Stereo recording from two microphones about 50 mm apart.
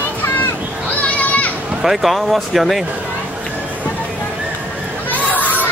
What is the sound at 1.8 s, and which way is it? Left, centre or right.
Speech, centre.